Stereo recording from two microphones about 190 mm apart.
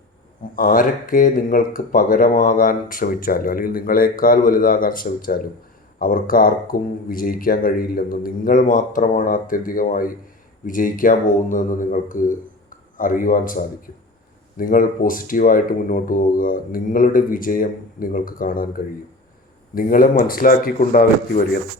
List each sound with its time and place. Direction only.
0.5 s speech: 45° left (ahead or behind)
19.7 s speech: 45° left (ahead or behind)